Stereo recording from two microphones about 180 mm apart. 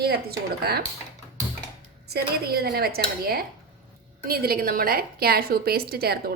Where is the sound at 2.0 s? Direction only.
60° right (ahead or behind).